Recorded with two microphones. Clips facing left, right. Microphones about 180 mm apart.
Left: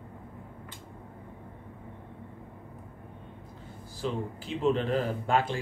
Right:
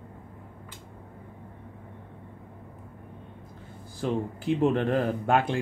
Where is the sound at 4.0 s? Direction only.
55° right (ahead or behind).